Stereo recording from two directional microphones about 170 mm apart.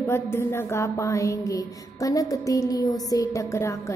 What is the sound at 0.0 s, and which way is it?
A woman's voice, 15° left (ahead or behind).